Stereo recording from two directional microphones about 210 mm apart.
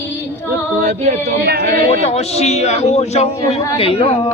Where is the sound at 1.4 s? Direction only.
50° right (ahead or behind).